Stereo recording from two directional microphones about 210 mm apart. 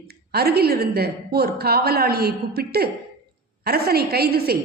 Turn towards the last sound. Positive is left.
turn(degrees=-50)  # may be behind; listen again after turning